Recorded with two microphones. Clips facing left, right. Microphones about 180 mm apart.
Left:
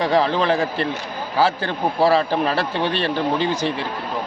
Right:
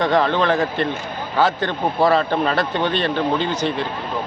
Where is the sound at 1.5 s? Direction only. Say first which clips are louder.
Right 1 dB; 10° left (ahead or behind).